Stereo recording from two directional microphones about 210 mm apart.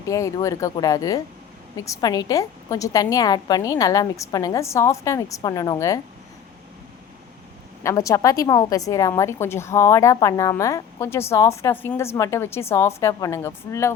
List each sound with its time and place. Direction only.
0.0 s a woman's voice: 15° left (ahead or behind)
7.9 s a woman's voice: 15° left (ahead or behind)